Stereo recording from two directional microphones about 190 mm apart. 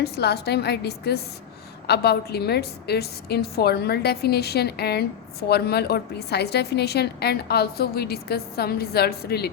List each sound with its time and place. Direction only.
0.0 s a woman's voice: 60° left (ahead or behind)